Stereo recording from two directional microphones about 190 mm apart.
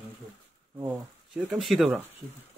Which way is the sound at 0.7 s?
15° right (ahead or behind).